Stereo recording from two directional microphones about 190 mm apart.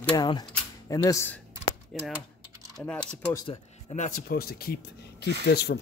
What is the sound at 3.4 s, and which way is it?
Speech, 25° left (ahead or behind).